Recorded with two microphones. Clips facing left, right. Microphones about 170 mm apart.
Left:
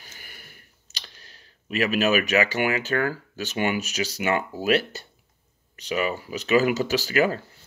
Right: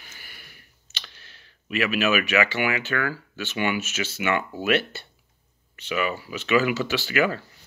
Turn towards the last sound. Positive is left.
turn(degrees=35)  # may be behind; listen again after turning